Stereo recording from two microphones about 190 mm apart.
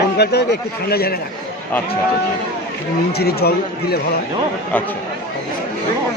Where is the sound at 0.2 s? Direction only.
60° left (ahead or behind).